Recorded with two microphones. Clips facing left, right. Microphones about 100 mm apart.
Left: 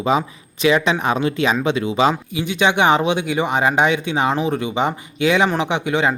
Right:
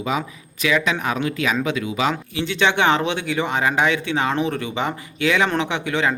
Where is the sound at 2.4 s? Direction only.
15° left (ahead or behind).